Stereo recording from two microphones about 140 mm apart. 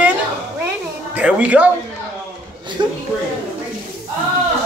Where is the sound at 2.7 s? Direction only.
35° right (ahead or behind).